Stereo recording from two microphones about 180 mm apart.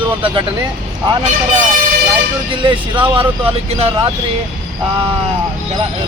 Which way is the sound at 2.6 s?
30° right (ahead or behind).